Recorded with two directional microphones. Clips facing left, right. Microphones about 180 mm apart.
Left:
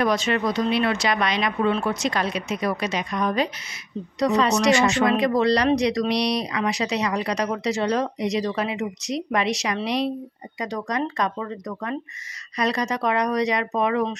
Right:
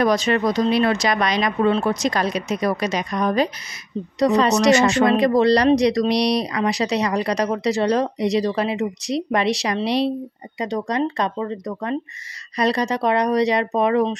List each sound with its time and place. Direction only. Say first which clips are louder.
0.0 s speech: right 4 dB; 40° right (ahead or behind)